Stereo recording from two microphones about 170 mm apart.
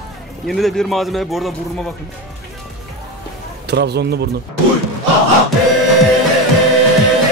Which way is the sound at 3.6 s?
80° right.